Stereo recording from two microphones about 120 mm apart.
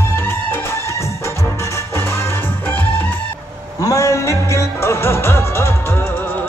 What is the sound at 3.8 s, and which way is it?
Music, 25° left (ahead or behind).